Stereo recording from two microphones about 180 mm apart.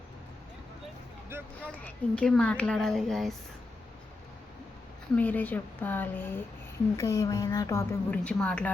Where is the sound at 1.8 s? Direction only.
5° left (ahead or behind).